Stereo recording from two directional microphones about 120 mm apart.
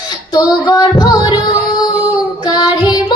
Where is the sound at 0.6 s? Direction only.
30° left (ahead or behind).